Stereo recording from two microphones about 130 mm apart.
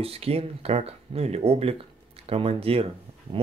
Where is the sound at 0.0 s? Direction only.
50° right (ahead or behind).